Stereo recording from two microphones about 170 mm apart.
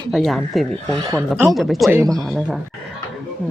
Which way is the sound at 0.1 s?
Centre (ahead or behind).